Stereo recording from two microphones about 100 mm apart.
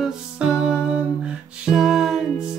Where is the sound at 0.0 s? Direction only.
5° right (ahead or behind).